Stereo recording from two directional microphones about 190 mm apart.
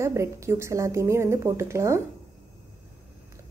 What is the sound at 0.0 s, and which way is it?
A woman's voice, 15° right (ahead or behind).